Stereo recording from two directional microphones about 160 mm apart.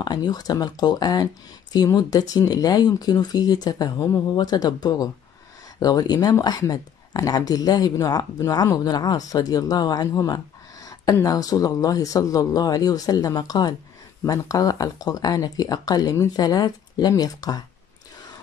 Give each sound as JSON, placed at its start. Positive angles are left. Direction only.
{"t": 0.0, "sound": "speech", "side_deg": 25}